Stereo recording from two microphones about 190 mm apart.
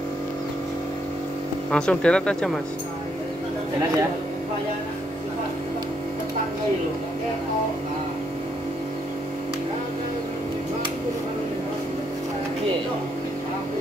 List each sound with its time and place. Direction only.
1.7 s speech: 5° left (ahead or behind)